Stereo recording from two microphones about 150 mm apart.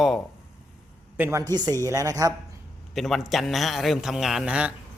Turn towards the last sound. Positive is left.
turn(degrees=-5)  # may be behind; listen again after turning